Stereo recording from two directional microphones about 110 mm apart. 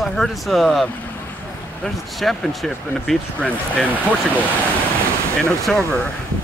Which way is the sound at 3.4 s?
15° left (ahead or behind).